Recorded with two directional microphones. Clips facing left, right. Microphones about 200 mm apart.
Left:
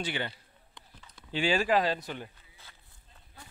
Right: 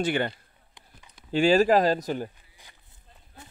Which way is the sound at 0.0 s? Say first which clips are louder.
Right 9 dB; 50° right (ahead or behind).